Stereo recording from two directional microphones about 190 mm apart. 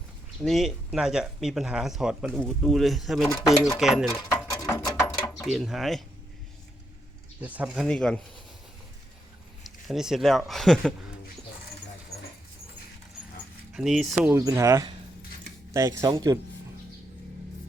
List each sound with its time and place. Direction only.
0.4 s speech: centre (ahead or behind)
4.3 s a sound: 15° left (ahead or behind)
7.4 s speech: 5° right (ahead or behind)
7.9 s speech: 5° left (ahead or behind)
9.6 s speech: centre (ahead or behind)
13.7 s speech: centre (ahead or behind)
14.3 s speech: 15° right (ahead or behind)